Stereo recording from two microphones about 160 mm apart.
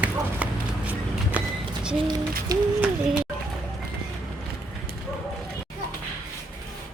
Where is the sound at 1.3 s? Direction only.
5° right (ahead or behind).